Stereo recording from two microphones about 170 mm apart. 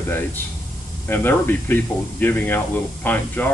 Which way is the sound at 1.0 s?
10° left (ahead or behind).